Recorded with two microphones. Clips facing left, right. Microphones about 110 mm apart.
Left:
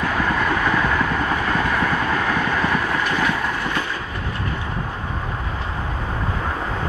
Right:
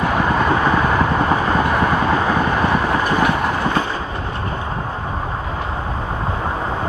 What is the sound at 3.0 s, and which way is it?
Train, 35° right (ahead or behind).